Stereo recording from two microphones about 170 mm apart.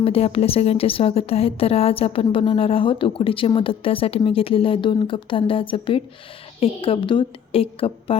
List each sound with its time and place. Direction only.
0.0 s a woman's voice: 35° left (ahead or behind)